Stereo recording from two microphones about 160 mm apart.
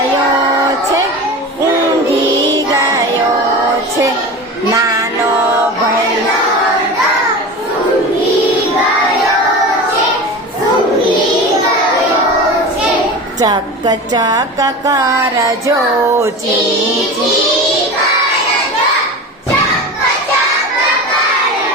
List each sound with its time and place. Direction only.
13.4 s speech: 25° right (ahead or behind)